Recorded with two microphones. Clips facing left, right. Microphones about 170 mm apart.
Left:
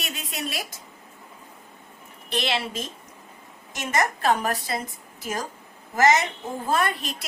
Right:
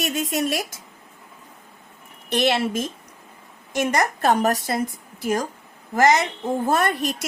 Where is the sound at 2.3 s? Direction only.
45° right (ahead or behind).